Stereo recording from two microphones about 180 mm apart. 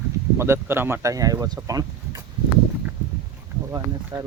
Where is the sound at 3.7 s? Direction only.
15° right (ahead or behind).